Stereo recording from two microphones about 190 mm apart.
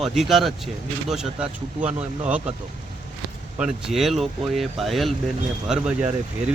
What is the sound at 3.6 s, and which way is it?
Speech, centre (ahead or behind).